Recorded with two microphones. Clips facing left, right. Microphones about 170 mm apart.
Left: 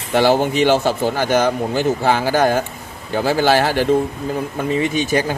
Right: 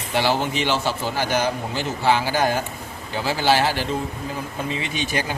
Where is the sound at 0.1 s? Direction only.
50° left (ahead or behind).